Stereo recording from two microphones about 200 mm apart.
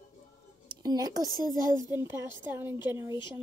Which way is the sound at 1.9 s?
15° right (ahead or behind).